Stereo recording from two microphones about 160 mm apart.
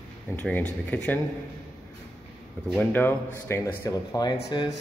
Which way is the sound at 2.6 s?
10° left (ahead or behind).